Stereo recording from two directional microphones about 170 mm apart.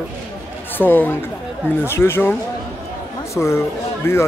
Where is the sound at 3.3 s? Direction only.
15° left (ahead or behind).